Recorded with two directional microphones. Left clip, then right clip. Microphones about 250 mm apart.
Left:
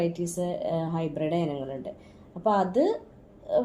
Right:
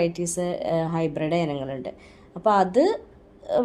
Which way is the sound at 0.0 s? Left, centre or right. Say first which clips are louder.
Right 4 dB; centre.